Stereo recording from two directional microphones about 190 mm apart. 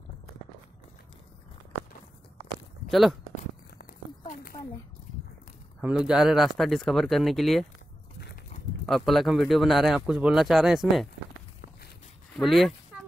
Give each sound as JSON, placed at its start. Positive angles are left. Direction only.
{"t": 2.9, "sound": "speech", "side_deg": 0}
{"t": 4.3, "sound": "a sound", "side_deg": 50}
{"t": 5.8, "sound": "speech", "side_deg": -5}
{"t": 8.8, "sound": "speech", "side_deg": 0}
{"t": 12.4, "sound": "speech", "side_deg": 0}